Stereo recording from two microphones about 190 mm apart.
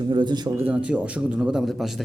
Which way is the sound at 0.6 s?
5° right (ahead or behind).